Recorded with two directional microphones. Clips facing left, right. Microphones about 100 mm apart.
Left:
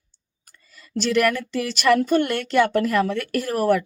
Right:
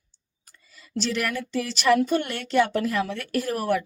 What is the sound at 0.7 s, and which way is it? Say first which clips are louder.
A woman's voice: left 6 dB; 60° left (ahead or behind).